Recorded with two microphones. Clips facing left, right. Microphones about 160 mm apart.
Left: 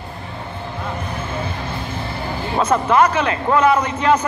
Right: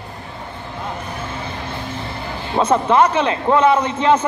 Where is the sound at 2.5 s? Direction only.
30° right (ahead or behind).